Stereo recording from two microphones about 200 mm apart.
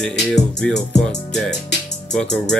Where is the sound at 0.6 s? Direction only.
5° left (ahead or behind).